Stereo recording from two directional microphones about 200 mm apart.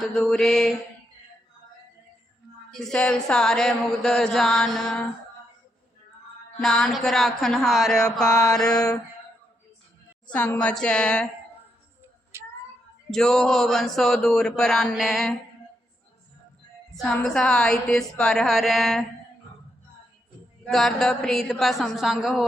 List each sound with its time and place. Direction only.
0.0 s speech: centre (ahead or behind)
2.6 s speech: 5° left (ahead or behind)
6.6 s speech: centre (ahead or behind)
8.3 s mantra: 15° left (ahead or behind)
8.5 s speech: 5° left (ahead or behind)
10.2 s speech: 5° left (ahead or behind)
12.3 s a sound: 15° right (ahead or behind)
13.1 s speech: centre (ahead or behind)
16.9 s speech: centre (ahead or behind)
20.7 s speech: centre (ahead or behind)